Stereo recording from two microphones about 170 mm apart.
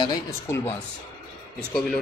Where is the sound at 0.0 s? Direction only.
25° left (ahead or behind).